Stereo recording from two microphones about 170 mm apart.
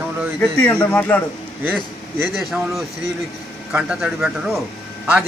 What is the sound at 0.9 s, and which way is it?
Speech, 10° left (ahead or behind).